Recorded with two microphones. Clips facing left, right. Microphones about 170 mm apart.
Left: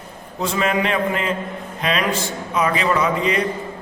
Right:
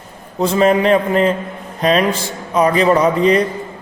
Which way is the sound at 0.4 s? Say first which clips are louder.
Right 8 dB; 35° right (ahead or behind).